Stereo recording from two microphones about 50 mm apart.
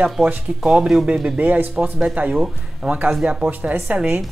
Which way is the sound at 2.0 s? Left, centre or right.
Right.